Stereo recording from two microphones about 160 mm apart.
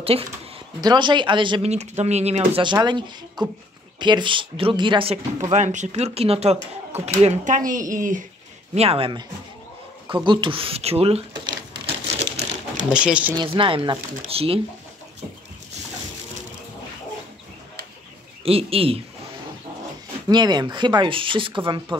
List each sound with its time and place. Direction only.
0.7 s speech: 25° right (ahead or behind)
1.7 s speech: 45° right (ahead or behind)
2.6 s speech: 30° right (ahead or behind)
5.5 s speech: 50° right (ahead or behind)
8.7 s speech: 40° right (ahead or behind)
12.9 s speech: 5° right (ahead or behind)
13.4 s speech: 30° right (ahead or behind)
18.4 s speech: 35° right (ahead or behind)
20.2 s speech: 25° right (ahead or behind)